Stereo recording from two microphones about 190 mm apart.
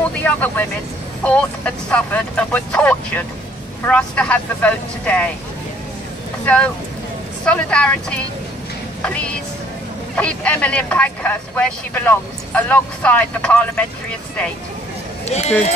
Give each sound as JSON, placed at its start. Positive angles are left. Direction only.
{"t": 0.2, "sound": "speech", "side_deg": 10}
{"t": 6.4, "sound": "speech", "side_deg": 5}
{"t": 15.2, "sound": "speech", "side_deg": 35}